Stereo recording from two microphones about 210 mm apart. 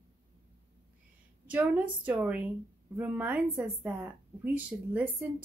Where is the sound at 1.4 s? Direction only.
5° right (ahead or behind).